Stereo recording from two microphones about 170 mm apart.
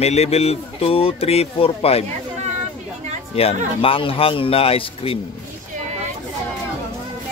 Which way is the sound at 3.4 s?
35° left (ahead or behind).